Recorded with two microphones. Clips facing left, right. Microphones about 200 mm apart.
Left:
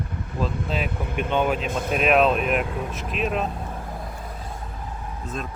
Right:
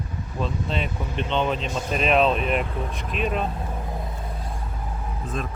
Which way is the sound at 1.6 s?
55° left (ahead or behind).